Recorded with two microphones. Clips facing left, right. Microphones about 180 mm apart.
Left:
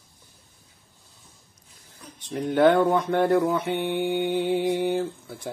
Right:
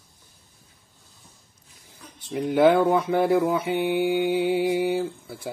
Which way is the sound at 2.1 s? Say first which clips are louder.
Right 1 dB; 10° right (ahead or behind).